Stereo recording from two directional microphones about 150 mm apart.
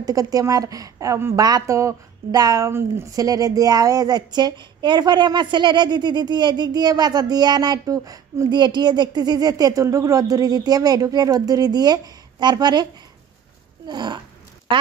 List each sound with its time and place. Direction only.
0.0 s a woman's voice: 25° right (ahead or behind)
13.8 s a woman's voice: 30° right (ahead or behind)